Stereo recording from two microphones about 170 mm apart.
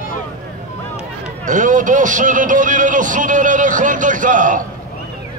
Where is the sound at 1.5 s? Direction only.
50° right (ahead or behind).